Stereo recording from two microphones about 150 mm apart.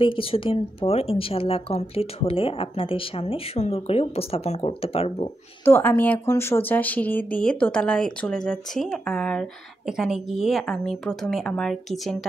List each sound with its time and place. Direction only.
0.0 s speech: 35° left (ahead or behind)
5.7 s a woman's voice: 15° left (ahead or behind)